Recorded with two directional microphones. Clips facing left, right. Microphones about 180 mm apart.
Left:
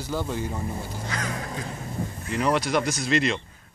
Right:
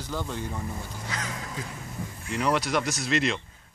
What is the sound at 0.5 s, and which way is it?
Speech, 30° left (ahead or behind).